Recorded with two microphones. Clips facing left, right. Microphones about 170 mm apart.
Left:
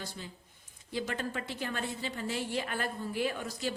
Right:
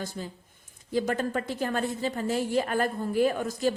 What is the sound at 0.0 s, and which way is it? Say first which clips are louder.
A woman's voice: right 7 dB; 45° right (ahead or behind).